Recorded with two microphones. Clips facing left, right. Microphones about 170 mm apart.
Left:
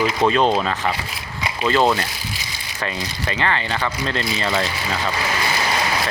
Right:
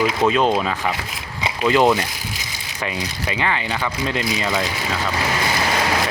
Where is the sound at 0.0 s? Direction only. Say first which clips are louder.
Even; 5° right (ahead or behind).